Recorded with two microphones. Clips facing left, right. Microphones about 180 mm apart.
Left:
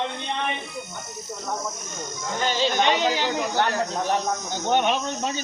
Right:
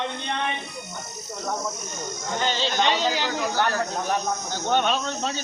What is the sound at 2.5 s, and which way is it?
Speech, 45° left (ahead or behind).